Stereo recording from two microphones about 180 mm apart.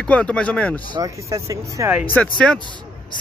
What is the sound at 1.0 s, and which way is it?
Speech, 15° right (ahead or behind).